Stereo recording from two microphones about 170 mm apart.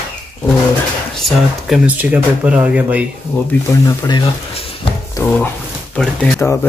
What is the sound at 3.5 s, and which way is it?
Speech, 15° left (ahead or behind).